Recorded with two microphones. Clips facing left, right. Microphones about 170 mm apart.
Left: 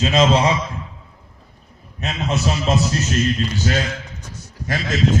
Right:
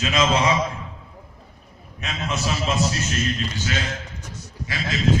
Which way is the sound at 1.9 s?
35° left (ahead or behind).